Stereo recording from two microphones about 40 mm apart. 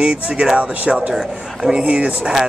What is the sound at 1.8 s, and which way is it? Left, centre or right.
Speech, right.